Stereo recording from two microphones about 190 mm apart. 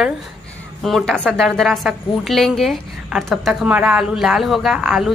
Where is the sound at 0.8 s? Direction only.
Centre (ahead or behind).